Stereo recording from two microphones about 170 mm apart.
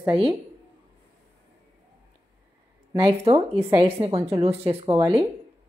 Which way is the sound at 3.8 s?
35° right (ahead or behind).